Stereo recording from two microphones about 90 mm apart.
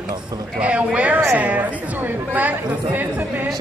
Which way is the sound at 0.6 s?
15° right (ahead or behind).